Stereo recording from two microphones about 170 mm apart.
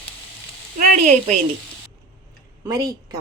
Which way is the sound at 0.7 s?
45° right (ahead or behind).